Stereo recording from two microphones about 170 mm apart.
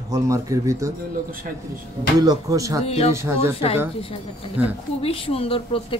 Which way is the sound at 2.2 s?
20° right (ahead or behind).